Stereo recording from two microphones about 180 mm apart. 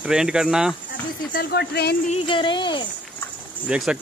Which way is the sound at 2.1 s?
30° left (ahead or behind).